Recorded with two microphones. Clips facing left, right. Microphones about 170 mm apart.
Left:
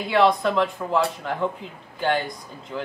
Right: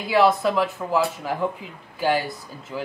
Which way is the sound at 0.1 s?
5° right (ahead or behind).